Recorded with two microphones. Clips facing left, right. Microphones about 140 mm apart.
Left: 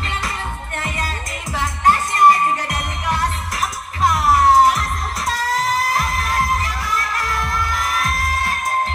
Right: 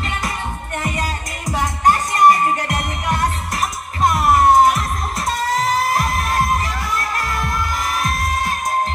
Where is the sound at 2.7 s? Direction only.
Centre (ahead or behind).